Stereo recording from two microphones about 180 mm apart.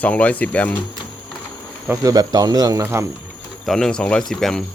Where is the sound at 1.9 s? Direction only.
20° right (ahead or behind).